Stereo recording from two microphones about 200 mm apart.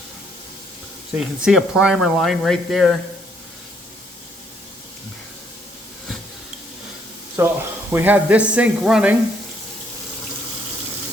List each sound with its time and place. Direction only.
1.4 s speech: centre (ahead or behind)
7.3 s speech: 10° right (ahead or behind)